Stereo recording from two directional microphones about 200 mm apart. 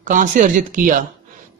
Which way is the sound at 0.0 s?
40° right (ahead or behind).